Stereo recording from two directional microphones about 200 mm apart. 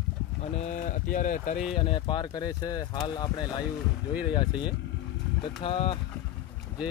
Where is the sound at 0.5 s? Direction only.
35° left (ahead or behind).